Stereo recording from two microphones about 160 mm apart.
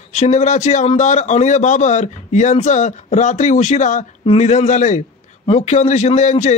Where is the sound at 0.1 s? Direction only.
45° left (ahead or behind).